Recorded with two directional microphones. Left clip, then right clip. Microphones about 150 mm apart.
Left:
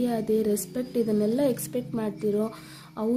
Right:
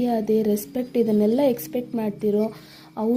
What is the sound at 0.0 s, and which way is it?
A woman's voice, 5° right (ahead or behind).